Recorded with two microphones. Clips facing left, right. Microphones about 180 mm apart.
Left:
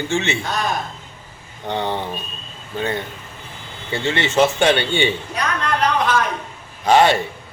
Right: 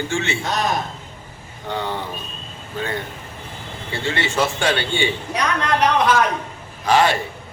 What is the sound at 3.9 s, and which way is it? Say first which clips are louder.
A man's voice: left 3 dB; 20° left (ahead or behind).